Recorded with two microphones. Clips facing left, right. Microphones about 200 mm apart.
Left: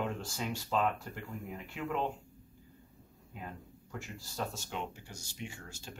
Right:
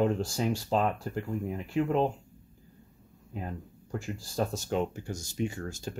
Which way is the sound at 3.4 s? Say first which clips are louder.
Right 7 dB; 40° right (ahead or behind).